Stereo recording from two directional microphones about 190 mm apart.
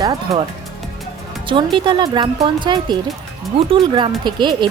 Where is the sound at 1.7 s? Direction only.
25° right (ahead or behind).